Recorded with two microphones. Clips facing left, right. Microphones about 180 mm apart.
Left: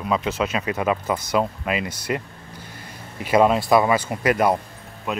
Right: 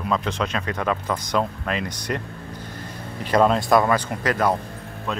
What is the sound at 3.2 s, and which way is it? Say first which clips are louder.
Speech: left 1 dB; 10° left (ahead or behind).